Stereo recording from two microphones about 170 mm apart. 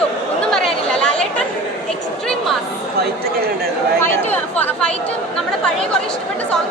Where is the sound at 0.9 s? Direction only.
5° left (ahead or behind).